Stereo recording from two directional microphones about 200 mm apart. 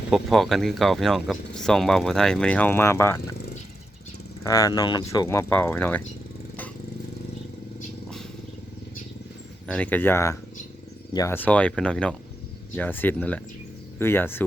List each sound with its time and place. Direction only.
0.1 s speech: centre (ahead or behind)
4.4 s speech: 15° left (ahead or behind)
9.6 s speech: 5° left (ahead or behind)